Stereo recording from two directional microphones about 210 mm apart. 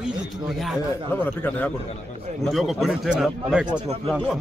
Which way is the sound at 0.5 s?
Centre (ahead or behind).